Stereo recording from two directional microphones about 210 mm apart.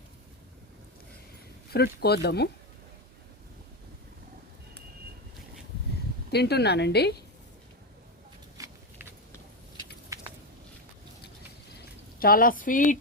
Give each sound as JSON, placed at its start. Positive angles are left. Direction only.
{"t": 1.7, "sound": "a woman's voice", "side_deg": 50}
{"t": 6.3, "sound": "a woman's voice", "side_deg": 50}
{"t": 10.1, "sound": "a sound", "side_deg": -15}
{"t": 12.2, "sound": "speech", "side_deg": 45}